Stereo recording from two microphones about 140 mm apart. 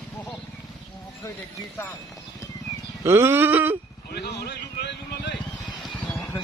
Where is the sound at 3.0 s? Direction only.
15° right (ahead or behind).